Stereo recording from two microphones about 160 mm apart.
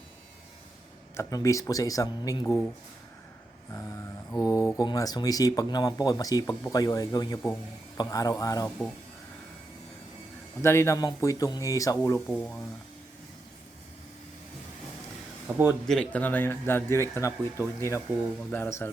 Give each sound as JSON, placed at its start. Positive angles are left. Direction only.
{"t": 1.1, "sound": "speech", "side_deg": 20}
{"t": 4.3, "sound": "speech", "side_deg": 20}
{"t": 10.6, "sound": "speech", "side_deg": 15}
{"t": 12.3, "sound": "speech", "side_deg": 5}
{"t": 15.4, "sound": "a man's voice", "side_deg": -15}
{"t": 15.9, "sound": "speech", "side_deg": 5}